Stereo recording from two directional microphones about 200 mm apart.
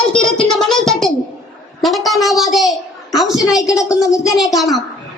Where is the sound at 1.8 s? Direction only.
Centre (ahead or behind).